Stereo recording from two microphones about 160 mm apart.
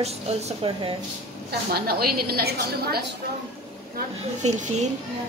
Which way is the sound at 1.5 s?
75° right (ahead or behind).